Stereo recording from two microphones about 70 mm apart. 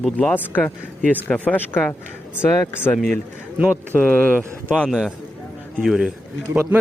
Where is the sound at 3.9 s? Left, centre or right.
Left.